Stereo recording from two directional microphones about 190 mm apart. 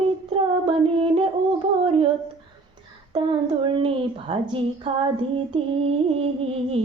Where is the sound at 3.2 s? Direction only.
25° right (ahead or behind).